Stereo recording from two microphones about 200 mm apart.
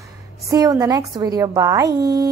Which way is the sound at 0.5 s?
15° right (ahead or behind).